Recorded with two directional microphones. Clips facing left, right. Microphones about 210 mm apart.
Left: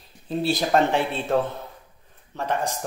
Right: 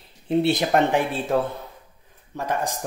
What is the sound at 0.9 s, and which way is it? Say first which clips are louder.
Speech: right 1 dB; 15° right (ahead or behind).